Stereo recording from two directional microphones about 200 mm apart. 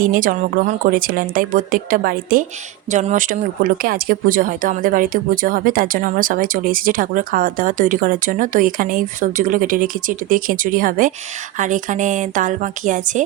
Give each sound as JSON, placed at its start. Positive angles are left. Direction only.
{"t": 0.0, "sound": "a woman's voice", "side_deg": -45}